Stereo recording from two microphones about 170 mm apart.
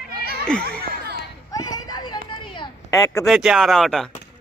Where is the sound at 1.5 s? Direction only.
20° left (ahead or behind).